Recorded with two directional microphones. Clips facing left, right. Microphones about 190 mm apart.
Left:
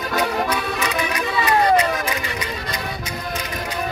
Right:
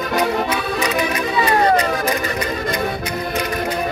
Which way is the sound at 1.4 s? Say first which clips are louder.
Right 1 dB; 35° right (ahead or behind).